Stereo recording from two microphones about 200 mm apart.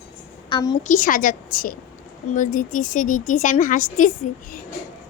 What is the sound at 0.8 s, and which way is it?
A woman's voice, 40° left (ahead or behind).